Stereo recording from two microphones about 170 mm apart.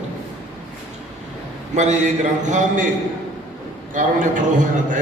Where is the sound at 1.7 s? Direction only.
45° right (ahead or behind).